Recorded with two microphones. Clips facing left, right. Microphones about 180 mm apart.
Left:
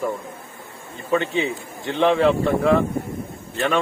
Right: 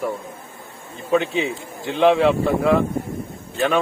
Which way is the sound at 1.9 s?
5° right (ahead or behind).